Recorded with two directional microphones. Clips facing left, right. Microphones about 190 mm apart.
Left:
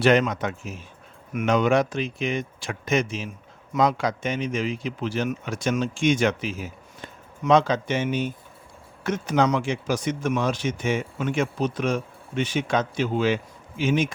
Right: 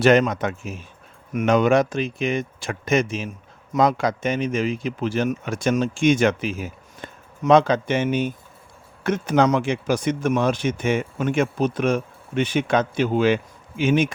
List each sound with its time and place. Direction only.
0.0 s speech: 45° right (ahead or behind); by 14.1 s 60° right (ahead or behind)